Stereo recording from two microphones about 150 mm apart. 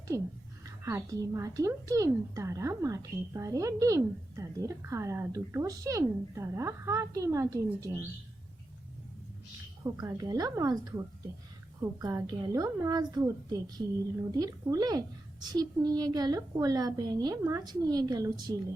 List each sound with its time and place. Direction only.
0.1 s a woman's voice: 20° right (ahead or behind)
9.8 s a woman's voice: 25° right (ahead or behind)